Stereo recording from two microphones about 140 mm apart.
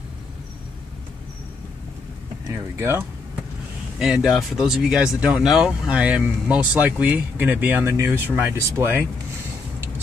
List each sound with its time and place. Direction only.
2.5 s speech: 20° right (ahead or behind)
4.0 s speech: 5° right (ahead or behind)